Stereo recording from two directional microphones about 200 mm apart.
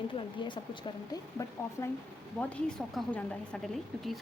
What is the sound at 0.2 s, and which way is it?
Speech, 25° left (ahead or behind).